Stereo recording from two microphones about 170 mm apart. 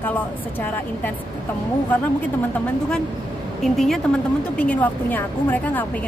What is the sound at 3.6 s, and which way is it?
A woman's voice, centre (ahead or behind).